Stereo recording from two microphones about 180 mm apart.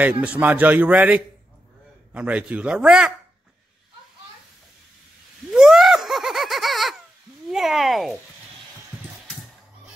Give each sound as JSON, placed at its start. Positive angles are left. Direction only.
{"t": 0.0, "sound": "a man's voice", "side_deg": -10}
{"t": 5.5, "sound": "giggle", "side_deg": -5}
{"t": 7.4, "sound": "a sound", "side_deg": 0}